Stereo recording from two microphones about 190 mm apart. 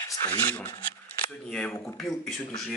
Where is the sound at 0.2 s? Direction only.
10° left (ahead or behind).